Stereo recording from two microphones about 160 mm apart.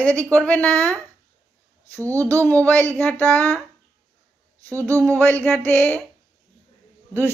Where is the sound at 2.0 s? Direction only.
20° right (ahead or behind).